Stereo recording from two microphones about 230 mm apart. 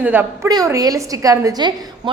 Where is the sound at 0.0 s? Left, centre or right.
Centre.